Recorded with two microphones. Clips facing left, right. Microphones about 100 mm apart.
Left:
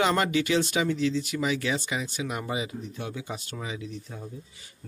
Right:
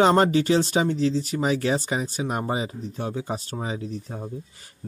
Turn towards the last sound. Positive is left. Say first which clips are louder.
# right 5 dB
turn(degrees=-40)  # may be behind; listen again after turning